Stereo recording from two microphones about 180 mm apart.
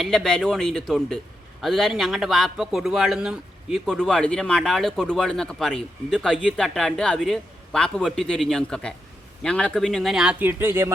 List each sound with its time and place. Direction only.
0.0 s a man's voice: centre (ahead or behind); by 10.9 s 15° right (ahead or behind)